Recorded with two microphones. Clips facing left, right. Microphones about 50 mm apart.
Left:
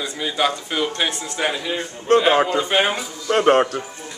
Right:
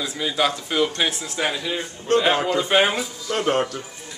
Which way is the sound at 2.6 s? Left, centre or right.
Centre.